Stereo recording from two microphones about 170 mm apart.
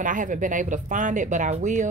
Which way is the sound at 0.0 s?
50° right (ahead or behind).